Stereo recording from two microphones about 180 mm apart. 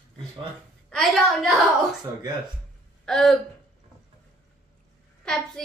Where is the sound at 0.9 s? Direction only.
Centre (ahead or behind).